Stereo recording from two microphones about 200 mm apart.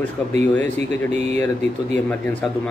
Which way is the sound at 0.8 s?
35° right (ahead or behind).